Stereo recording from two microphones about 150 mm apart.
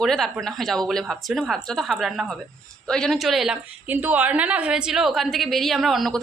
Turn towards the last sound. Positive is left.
turn(degrees=0)  # may be behind; listen again after turning